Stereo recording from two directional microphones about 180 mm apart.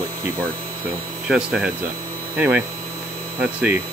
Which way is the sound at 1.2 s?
5° right (ahead or behind).